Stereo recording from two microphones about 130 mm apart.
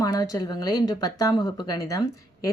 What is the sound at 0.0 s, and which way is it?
Speech, 25° left (ahead or behind).